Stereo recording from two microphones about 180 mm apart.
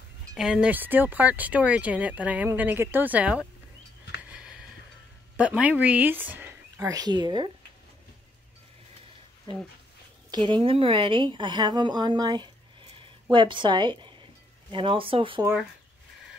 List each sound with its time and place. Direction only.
0.3 s speech: 5° right (ahead or behind)
4.2 s a sound: 5° right (ahead or behind)
5.4 s speech: 5° right (ahead or behind); by 7.5 s 25° right (ahead or behind)
10.3 s a woman's voice: 25° right (ahead or behind)